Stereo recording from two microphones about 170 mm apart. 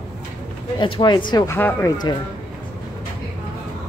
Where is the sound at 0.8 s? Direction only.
30° left (ahead or behind).